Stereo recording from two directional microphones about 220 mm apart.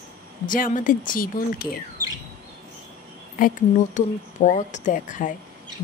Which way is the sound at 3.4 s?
40° left (ahead or behind).